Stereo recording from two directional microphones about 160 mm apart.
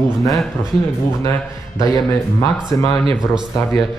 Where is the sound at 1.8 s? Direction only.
20° left (ahead or behind).